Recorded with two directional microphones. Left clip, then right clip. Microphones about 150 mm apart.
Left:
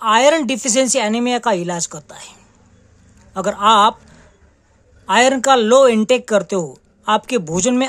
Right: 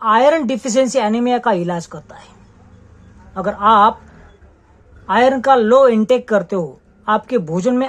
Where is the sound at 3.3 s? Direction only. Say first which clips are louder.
Even; 25° left (ahead or behind).